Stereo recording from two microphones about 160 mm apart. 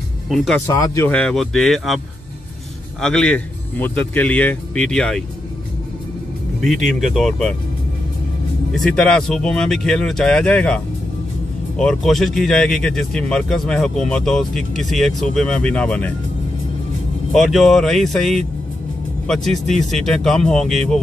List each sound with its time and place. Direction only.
0.7 s speech: 20° left (ahead or behind)
1.1 s speech: 5° left (ahead or behind)
3.0 s a man's voice: 5° left (ahead or behind)
6.9 s speech: centre (ahead or behind)
8.7 s a man's voice: 5° left (ahead or behind)
17.3 s speech: centre (ahead or behind)